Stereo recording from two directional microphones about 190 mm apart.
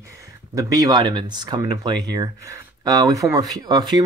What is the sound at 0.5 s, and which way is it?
Speech, 20° right (ahead or behind).